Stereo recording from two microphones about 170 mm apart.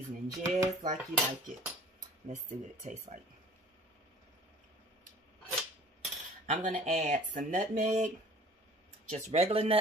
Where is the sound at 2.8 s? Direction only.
45° right (ahead or behind).